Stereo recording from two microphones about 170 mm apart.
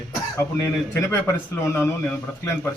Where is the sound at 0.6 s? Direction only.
15° left (ahead or behind).